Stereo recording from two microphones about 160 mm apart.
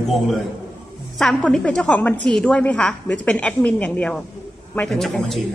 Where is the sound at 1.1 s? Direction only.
5° left (ahead or behind).